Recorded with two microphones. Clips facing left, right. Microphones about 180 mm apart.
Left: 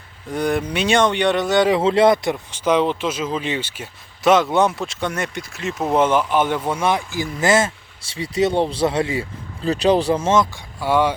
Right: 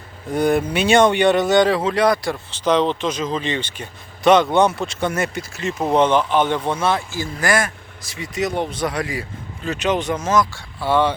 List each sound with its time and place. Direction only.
0.3 s speech: 5° right (ahead or behind)
1.8 s speech: 25° left (ahead or behind)
10.8 s speech: 10° left (ahead or behind)